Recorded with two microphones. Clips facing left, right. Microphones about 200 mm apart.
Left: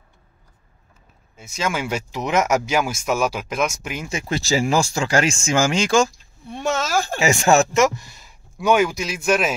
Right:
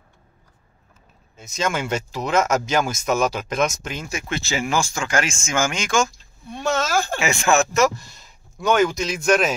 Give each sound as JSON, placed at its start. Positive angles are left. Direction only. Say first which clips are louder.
{"t": 1.3, "sound": "speech", "louder": "right 1 dB", "side_deg": 10}
{"t": 4.1, "sound": "speech", "louder": "left 5 dB", "side_deg": 35}
{"t": 7.7, "sound": "speech", "louder": "left 1 dB", "side_deg": 20}